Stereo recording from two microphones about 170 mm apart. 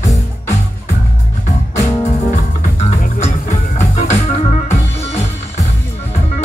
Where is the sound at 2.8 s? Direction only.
40° left (ahead or behind).